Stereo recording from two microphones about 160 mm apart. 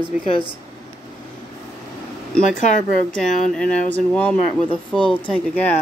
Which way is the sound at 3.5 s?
5° left (ahead or behind).